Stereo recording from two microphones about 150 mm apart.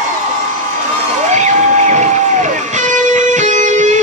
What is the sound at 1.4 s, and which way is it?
Vehicle, 55° right (ahead or behind).